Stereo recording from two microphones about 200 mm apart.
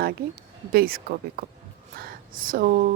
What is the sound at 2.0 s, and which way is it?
Speech, 45° right (ahead or behind).